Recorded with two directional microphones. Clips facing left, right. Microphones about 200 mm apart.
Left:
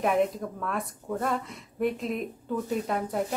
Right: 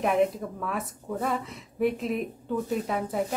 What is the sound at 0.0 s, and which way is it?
Speech, centre (ahead or behind).